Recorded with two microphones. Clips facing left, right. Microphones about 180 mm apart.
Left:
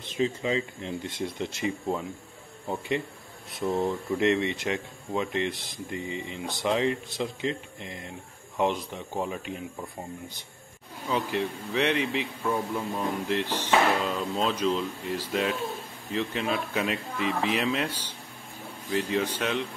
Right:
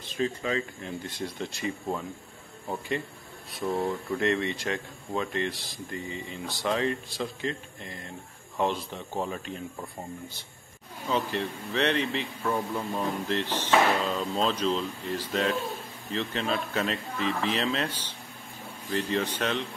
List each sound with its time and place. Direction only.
0.0 s speech: 20° left (ahead or behind)
3.5 s speech: 20° left (ahead or behind)
11.1 s speech: 10° left (ahead or behind)